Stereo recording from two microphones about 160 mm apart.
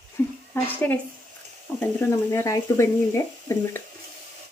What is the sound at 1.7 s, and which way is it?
Speech, 20° left (ahead or behind).